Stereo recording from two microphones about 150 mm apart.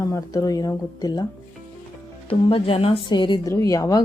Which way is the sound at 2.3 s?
35° left (ahead or behind).